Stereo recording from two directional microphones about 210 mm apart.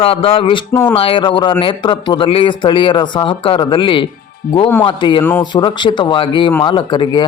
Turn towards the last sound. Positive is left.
turn(degrees=20)  # may be behind; listen again after turning